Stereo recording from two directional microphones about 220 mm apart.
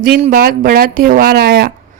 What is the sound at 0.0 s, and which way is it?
Speech, 45° right (ahead or behind).